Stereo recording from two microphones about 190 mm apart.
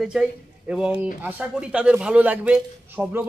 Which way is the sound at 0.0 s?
Centre (ahead or behind).